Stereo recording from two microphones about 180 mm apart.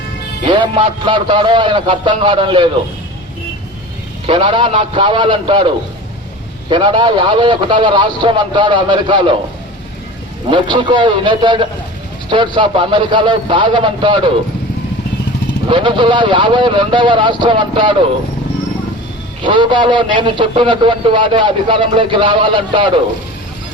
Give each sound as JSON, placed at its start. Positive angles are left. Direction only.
{"t": 0.4, "sound": "a man's voice", "side_deg": -25}
{"t": 4.3, "sound": "a man's voice", "side_deg": -25}
{"t": 10.5, "sound": "a man's voice", "side_deg": -25}
{"t": 15.7, "sound": "a man's voice", "side_deg": -25}
{"t": 19.4, "sound": "a man's voice", "side_deg": -25}